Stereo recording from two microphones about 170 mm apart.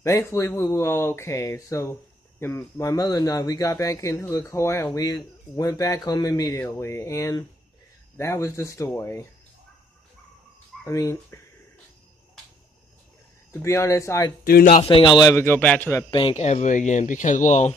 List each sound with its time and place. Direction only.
0.0 s speech: 15° left (ahead or behind)
10.9 s speech: 20° left (ahead or behind)
13.5 s speech: 15° left (ahead or behind)
14.4 s speech: 55° left (ahead or behind)
14.8 s speech: 30° left (ahead or behind); by 16.1 s 15° left (ahead or behind)
16.1 s speech: 30° left (ahead or behind)
16.3 s speech: 45° left (ahead or behind)